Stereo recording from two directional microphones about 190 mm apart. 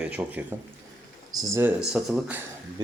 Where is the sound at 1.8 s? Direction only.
5° right (ahead or behind).